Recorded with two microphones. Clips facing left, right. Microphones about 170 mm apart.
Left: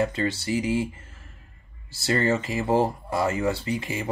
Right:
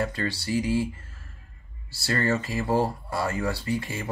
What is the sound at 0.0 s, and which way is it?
Speech, 20° left (ahead or behind).